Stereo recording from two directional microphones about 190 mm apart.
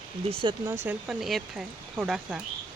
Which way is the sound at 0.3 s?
25° right (ahead or behind).